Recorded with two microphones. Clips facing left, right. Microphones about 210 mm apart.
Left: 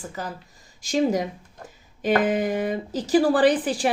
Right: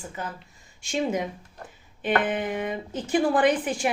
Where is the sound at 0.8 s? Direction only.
35° left (ahead or behind).